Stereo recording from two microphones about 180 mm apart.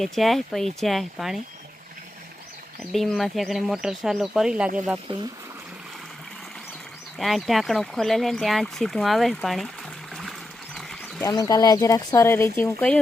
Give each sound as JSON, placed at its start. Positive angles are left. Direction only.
{"t": 0.0, "sound": "speech", "side_deg": 0}
{"t": 2.9, "sound": "speech", "side_deg": 0}
{"t": 7.2, "sound": "speech", "side_deg": 0}
{"t": 11.2, "sound": "speech", "side_deg": 20}